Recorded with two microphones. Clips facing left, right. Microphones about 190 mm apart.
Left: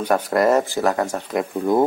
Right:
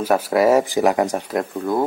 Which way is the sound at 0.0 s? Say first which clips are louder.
Right 1 dB; 5° right (ahead or behind).